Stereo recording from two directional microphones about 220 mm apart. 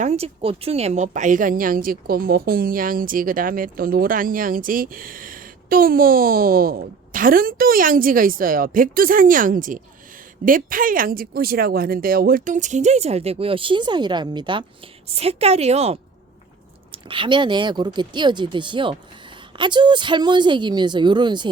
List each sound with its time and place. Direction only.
0.0 s a woman's voice: 30° right (ahead or behind)